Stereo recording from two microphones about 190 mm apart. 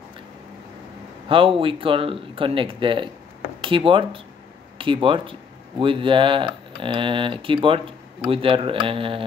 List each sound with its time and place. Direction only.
1.3 s speech: 30° right (ahead or behind)